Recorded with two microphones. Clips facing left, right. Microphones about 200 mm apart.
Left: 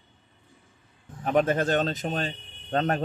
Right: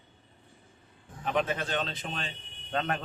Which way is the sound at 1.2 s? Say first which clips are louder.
Left 7 dB; 45° left (ahead or behind).